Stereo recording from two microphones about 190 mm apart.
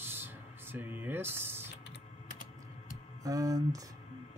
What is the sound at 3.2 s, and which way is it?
Speech, 15° right (ahead or behind).